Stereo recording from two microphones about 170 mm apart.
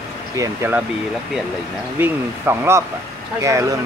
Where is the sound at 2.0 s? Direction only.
15° right (ahead or behind).